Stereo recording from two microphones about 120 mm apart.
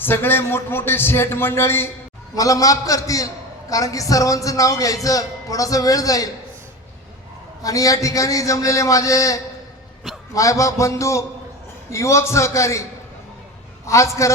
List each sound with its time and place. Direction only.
0.0 s a man's voice: 15° left (ahead or behind)
7.6 s a man's voice: 30° left (ahead or behind)
13.8 s a man's voice: 25° left (ahead or behind)